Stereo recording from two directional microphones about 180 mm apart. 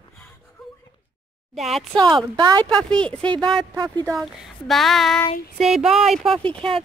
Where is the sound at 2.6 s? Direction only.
5° left (ahead or behind).